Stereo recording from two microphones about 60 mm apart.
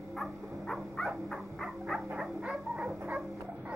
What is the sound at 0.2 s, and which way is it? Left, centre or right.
Dog, centre.